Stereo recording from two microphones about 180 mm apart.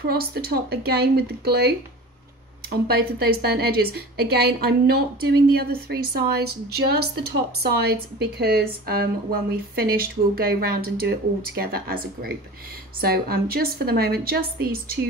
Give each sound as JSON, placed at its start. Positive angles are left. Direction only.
{"t": 0.1, "sound": "a woman's voice", "side_deg": -60}